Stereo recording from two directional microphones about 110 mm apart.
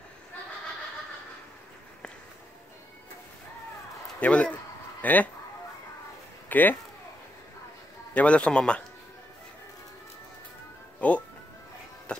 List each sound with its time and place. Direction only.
4.2 s a man's voice: 10° left (ahead or behind)
6.5 s a man's voice: 15° left (ahead or behind)
8.1 s a man's voice: 10° left (ahead or behind)
11.0 s speech: 10° left (ahead or behind)